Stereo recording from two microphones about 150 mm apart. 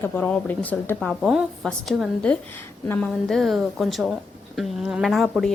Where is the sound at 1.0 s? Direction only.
5° right (ahead or behind).